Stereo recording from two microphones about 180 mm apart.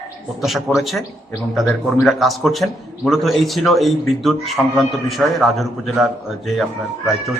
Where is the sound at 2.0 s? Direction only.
Centre (ahead or behind).